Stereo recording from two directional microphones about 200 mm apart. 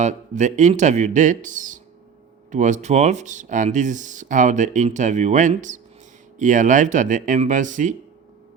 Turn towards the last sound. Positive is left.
turn(degrees=-40)  # may be behind; listen again after turning